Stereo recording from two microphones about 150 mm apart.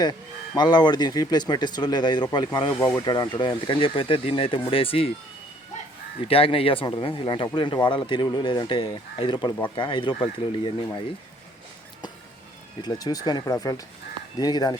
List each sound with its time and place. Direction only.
0.0 s speech: 30° left (ahead or behind)
6.2 s speech: 40° left (ahead or behind)
12.8 s speech: 25° left (ahead or behind)